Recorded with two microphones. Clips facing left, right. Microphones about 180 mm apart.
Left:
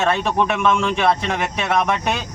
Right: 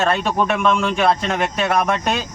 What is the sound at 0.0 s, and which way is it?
Speech, centre (ahead or behind).